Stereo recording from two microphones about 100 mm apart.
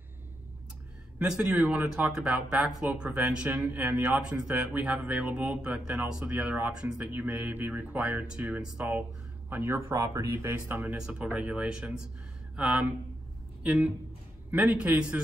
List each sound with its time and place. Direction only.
1.2 s speech: 10° right (ahead or behind)
9.8 s speech: 30° right (ahead or behind)
11.0 s speech: 5° right (ahead or behind)